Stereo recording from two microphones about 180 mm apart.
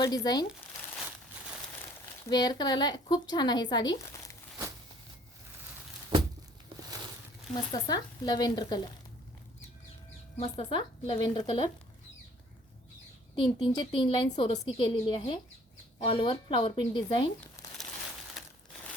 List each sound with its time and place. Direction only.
0.0 s speech: 20° left (ahead or behind)
2.3 s speech: 25° left (ahead or behind)
6.7 s boat: 20° right (ahead or behind)
7.5 s speech: 25° left (ahead or behind)
10.5 s speech: 25° left (ahead or behind)
13.3 s speech: 30° left (ahead or behind)
18.4 s crumpling: centre (ahead or behind)